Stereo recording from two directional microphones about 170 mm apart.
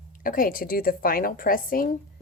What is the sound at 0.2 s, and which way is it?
A woman's voice, 55° left (ahead or behind).